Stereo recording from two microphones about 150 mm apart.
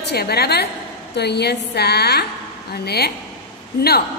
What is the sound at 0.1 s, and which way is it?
A woman's voice, 90° left.